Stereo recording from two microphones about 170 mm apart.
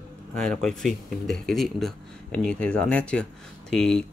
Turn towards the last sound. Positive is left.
turn(degrees=5)  # may be behind; listen again after turning